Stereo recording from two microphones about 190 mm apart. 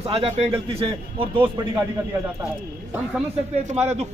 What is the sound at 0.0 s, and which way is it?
A man's voice, 30° right (ahead or behind).